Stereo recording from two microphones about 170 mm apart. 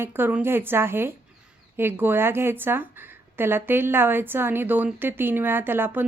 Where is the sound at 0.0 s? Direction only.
10° right (ahead or behind).